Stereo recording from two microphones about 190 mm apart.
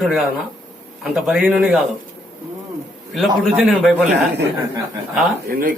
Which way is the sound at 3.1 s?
Centre (ahead or behind).